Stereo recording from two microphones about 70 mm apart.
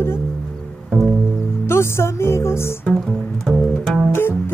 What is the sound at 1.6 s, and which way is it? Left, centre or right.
Music, left.